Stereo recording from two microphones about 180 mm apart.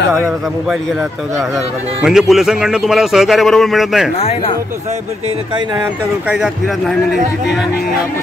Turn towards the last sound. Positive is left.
turn(degrees=0)  # may be behind; listen again after turning